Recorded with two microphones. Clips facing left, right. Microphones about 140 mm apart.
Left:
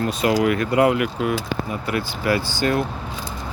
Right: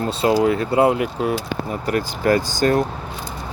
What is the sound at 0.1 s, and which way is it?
Speech, 30° right (ahead or behind).